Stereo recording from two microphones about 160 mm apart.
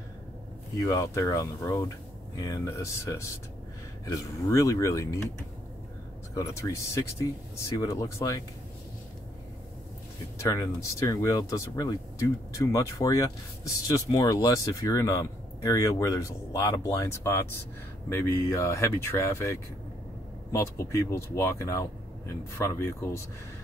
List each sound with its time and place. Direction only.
0.7 s speech: 20° left (ahead or behind)
6.3 s speech: 15° left (ahead or behind)
10.5 s speech: 20° left (ahead or behind)